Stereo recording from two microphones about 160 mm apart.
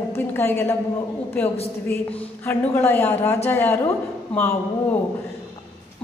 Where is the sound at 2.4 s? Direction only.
15° left (ahead or behind).